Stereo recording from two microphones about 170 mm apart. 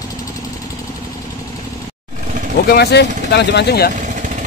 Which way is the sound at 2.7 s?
70° left (ahead or behind).